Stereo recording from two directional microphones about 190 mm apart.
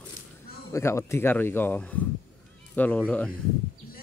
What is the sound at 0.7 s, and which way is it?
Speech, 15° left (ahead or behind).